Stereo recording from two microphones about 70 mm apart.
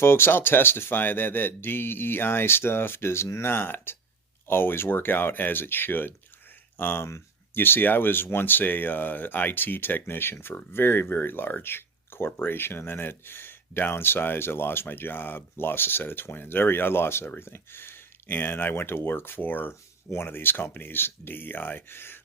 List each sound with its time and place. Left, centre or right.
0.0 s speech: left